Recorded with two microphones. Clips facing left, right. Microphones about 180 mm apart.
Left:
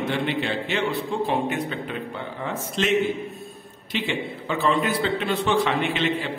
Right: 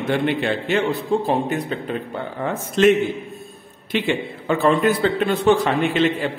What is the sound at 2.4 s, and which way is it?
A man's voice, 55° right (ahead or behind).